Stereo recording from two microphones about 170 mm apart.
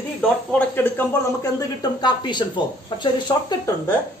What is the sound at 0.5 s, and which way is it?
A man's voice, 10° left (ahead or behind).